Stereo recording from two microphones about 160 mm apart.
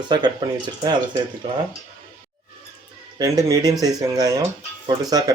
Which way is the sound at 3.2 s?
25° right (ahead or behind).